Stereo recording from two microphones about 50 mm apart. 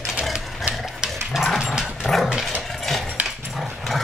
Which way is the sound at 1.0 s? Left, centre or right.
Centre.